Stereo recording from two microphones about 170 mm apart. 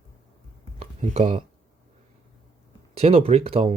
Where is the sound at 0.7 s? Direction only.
40° right (ahead or behind).